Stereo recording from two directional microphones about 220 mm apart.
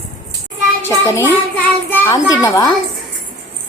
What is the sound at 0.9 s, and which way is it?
A woman's voice, 10° left (ahead or behind).